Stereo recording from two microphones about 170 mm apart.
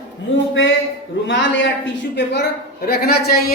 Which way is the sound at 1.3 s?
90° left.